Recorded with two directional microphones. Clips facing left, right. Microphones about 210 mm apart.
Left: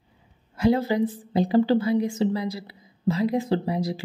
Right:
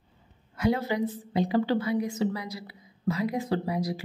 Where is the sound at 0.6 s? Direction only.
30° left (ahead or behind).